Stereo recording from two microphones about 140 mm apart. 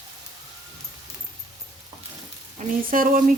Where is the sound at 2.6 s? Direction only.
80° right.